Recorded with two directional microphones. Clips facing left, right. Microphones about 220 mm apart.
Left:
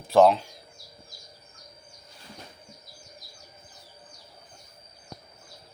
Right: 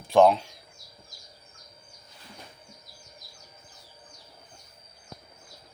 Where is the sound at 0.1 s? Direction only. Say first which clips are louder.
Left 1 dB; centre (ahead or behind).